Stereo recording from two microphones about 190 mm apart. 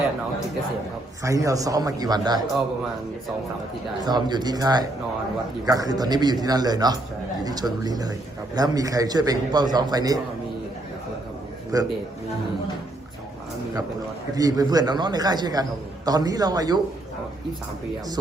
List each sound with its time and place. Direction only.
1.2 s a man's voice: 15° right (ahead or behind)
4.0 s a man's voice: 20° right (ahead or behind)
11.7 s a man's voice: 20° right (ahead or behind)
14.3 s a man's voice: 20° right (ahead or behind)